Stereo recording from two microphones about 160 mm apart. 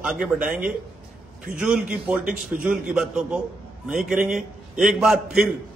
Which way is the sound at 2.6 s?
5° right (ahead or behind).